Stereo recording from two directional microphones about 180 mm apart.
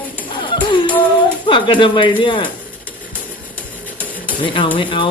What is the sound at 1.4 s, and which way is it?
Speech, 25° left (ahead or behind).